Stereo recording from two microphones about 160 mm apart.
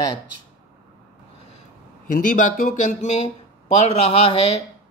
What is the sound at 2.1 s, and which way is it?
Speech, 55° left (ahead or behind).